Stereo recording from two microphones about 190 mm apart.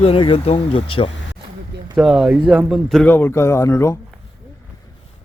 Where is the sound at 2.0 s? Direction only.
5° right (ahead or behind).